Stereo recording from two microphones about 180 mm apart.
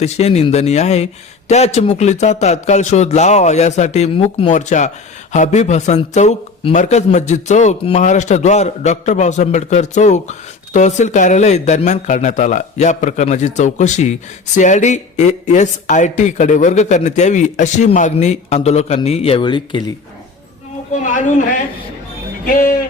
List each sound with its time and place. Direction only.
0.0 s speech: 35° left (ahead or behind)
21.0 s a man's voice: 45° left (ahead or behind)
22.4 s a man's voice: 50° left (ahead or behind)